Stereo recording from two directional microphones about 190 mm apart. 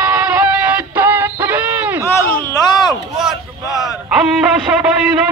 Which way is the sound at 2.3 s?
15° left (ahead or behind).